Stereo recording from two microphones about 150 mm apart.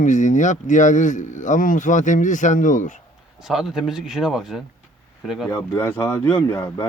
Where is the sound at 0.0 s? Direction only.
55° left (ahead or behind).